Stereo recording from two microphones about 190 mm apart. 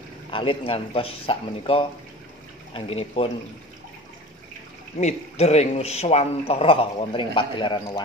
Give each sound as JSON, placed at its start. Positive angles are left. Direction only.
{"t": 0.3, "sound": "speech", "side_deg": 30}
{"t": 4.9, "sound": "a man's voice", "side_deg": 35}